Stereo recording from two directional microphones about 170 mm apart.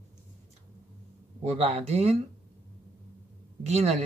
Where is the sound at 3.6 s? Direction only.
40° right (ahead or behind).